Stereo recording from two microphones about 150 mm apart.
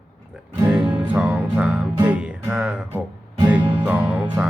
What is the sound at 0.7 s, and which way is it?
Music, 5° right (ahead or behind).